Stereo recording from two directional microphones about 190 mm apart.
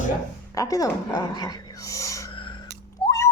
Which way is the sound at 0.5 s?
20° left (ahead or behind).